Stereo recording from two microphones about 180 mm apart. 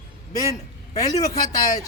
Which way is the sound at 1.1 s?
20° left (ahead or behind).